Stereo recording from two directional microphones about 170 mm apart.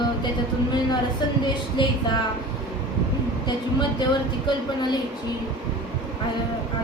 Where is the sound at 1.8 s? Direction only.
30° left (ahead or behind).